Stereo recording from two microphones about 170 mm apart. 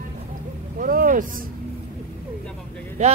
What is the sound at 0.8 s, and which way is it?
Speech, 55° right (ahead or behind).